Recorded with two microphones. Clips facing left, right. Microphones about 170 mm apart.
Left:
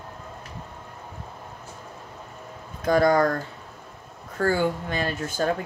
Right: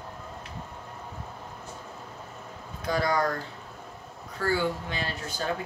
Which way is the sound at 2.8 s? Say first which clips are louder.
Left 7 dB; 50° left (ahead or behind).